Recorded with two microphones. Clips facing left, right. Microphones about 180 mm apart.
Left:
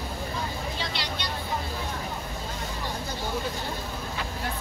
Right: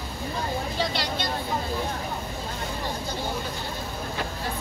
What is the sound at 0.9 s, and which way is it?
Vehicle, 45° right (ahead or behind).